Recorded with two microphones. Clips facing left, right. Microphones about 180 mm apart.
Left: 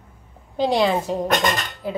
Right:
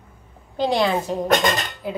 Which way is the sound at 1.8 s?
Centre (ahead or behind).